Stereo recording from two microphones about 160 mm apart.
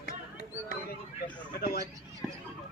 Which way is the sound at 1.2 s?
70° left (ahead or behind).